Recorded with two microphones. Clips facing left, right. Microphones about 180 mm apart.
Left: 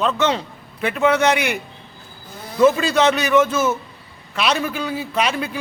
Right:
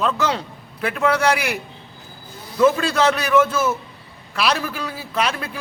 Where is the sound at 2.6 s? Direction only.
Centre (ahead or behind).